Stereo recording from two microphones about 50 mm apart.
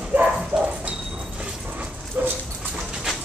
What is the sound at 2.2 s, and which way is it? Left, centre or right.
Dog, right.